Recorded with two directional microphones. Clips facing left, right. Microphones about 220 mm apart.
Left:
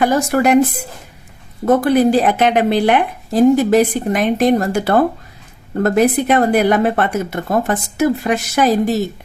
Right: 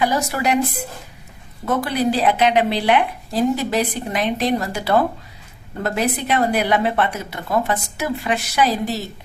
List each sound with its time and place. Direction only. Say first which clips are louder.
0.0 s speech: left 6 dB; 50° left (ahead or behind)
1.6 s speech: left 8 dB; 50° left (ahead or behind)